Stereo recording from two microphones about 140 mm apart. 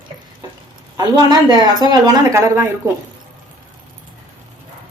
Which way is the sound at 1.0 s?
30° right (ahead or behind).